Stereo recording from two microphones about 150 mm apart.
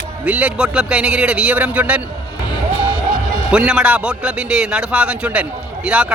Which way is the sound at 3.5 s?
5° right (ahead or behind).